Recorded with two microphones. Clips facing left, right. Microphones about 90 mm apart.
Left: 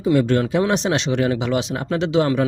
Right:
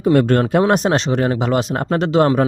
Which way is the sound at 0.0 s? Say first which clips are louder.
Right 3 dB; 50° right (ahead or behind).